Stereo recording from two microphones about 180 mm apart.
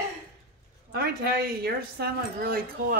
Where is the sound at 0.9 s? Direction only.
60° right (ahead or behind).